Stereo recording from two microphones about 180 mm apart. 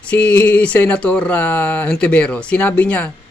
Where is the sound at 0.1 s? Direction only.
10° left (ahead or behind).